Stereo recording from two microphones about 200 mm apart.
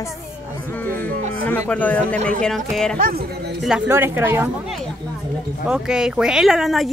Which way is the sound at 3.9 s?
10° right (ahead or behind).